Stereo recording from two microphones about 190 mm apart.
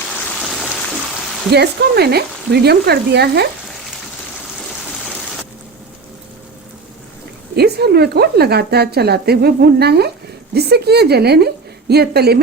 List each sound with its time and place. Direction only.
0.4 s water: centre (ahead or behind)
1.5 s speech: 60° right (ahead or behind)
7.5 s speech: 55° right (ahead or behind)